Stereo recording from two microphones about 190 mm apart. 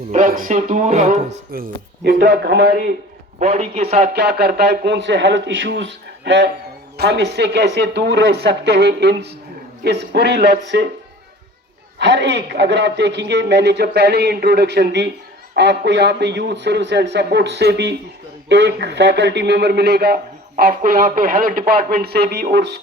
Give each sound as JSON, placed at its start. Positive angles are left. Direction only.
{"t": 0.1, "sound": "speech", "side_deg": -45}
{"t": 1.5, "sound": "a man's voice", "side_deg": -55}
{"t": 3.4, "sound": "speech", "side_deg": -35}
{"t": 4.1, "sound": "a man's voice", "side_deg": -60}
{"t": 11.9, "sound": "a man's voice", "side_deg": -65}